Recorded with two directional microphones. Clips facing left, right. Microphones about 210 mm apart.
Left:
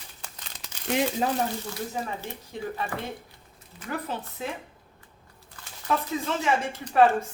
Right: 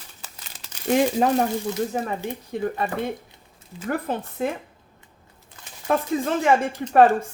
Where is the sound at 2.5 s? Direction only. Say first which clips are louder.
Right 9 dB; 60° right (ahead or behind).